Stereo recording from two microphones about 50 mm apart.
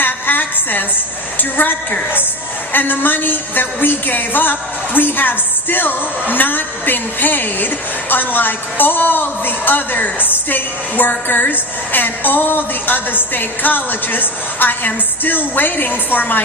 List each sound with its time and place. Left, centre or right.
0.0 s a sound: left
1.4 s a woman's voice: left
2.7 s a woman's voice: left